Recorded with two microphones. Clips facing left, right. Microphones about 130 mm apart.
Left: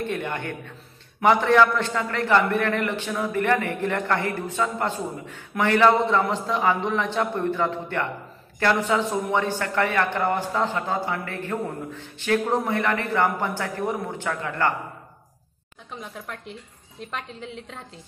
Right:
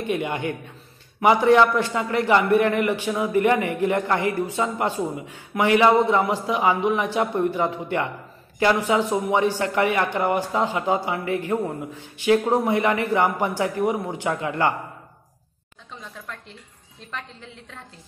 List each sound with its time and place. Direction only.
0.0 s a man's voice: 10° right (ahead or behind)